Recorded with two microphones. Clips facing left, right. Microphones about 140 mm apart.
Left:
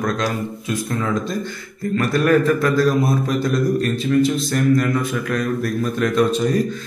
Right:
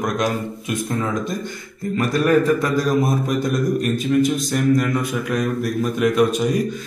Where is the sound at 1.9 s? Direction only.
15° right (ahead or behind).